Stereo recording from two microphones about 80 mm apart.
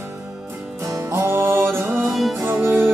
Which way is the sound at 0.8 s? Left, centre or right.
Right.